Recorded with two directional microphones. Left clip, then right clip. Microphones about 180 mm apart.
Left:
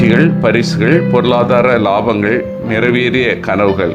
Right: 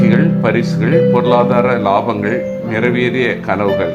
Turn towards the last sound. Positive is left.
turn(degrees=25)  # may be behind; listen again after turning